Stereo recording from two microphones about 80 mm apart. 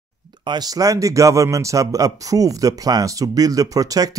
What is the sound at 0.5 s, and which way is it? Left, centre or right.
Speech, right.